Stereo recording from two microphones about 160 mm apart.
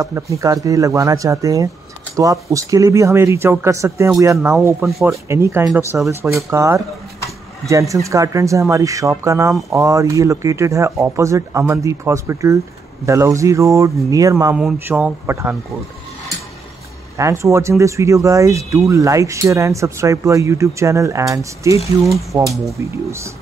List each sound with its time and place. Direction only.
0.0 s speech: 20° right (ahead or behind)
7.9 s speech: 20° right (ahead or behind)
14.5 s speech: 10° right (ahead or behind)
17.2 s speech: 20° right (ahead or behind)